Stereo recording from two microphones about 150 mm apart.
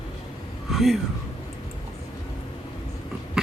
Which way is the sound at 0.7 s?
Centre (ahead or behind).